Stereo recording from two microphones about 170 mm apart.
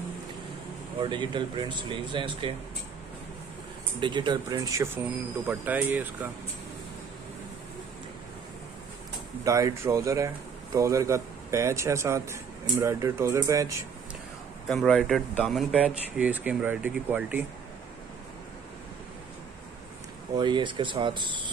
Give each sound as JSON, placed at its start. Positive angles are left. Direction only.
{"t": 1.0, "sound": "speech", "side_deg": -25}
{"t": 4.0, "sound": "speech", "side_deg": -25}
{"t": 9.4, "sound": "speech", "side_deg": -20}
{"t": 14.7, "sound": "speech", "side_deg": 0}
{"t": 20.3, "sound": "speech", "side_deg": -25}